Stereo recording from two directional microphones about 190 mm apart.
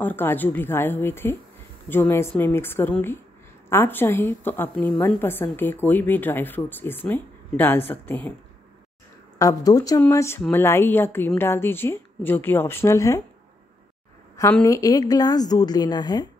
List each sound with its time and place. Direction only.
0.0 s speech: 10° left (ahead or behind)
9.4 s speech: 20° left (ahead or behind)
14.3 s a woman's voice: 15° left (ahead or behind)